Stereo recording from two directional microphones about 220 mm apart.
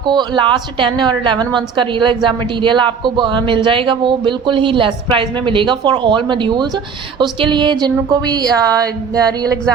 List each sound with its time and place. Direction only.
0.0 s a woman's voice: 20° right (ahead or behind)